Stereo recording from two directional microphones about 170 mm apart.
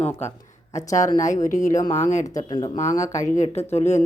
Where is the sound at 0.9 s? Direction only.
45° left (ahead or behind).